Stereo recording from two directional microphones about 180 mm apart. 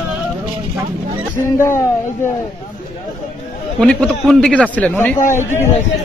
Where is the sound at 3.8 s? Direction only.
5° left (ahead or behind).